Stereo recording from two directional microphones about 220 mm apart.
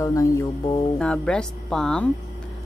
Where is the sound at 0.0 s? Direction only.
15° left (ahead or behind).